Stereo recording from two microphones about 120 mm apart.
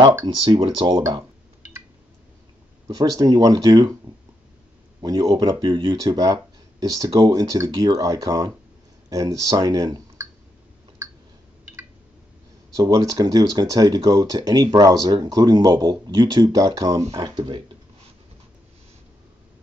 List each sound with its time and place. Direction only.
0.1 s speech: 30° right (ahead or behind)
2.9 s speech: 35° right (ahead or behind)
5.0 s speech: 35° right (ahead or behind)
12.7 s speech: 30° right (ahead or behind)